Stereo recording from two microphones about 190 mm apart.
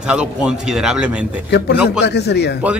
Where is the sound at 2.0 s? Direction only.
60° left (ahead or behind).